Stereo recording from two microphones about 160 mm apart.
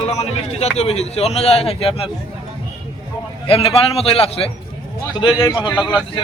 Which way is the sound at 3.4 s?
35° left (ahead or behind).